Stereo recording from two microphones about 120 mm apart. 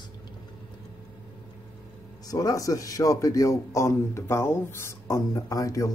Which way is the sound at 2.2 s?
30° left (ahead or behind).